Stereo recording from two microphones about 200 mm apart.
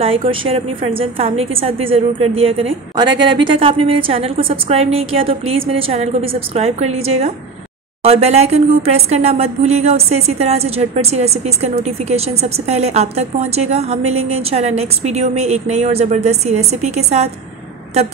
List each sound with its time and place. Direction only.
0.0 s a woman's voice: 30° right (ahead or behind)